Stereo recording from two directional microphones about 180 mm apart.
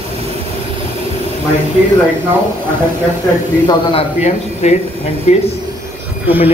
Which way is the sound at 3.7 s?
30° left (ahead or behind).